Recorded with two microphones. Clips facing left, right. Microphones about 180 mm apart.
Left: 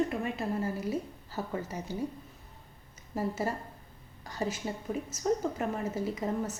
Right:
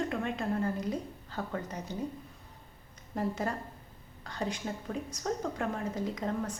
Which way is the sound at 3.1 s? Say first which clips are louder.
Left 1 dB; 5° left (ahead or behind).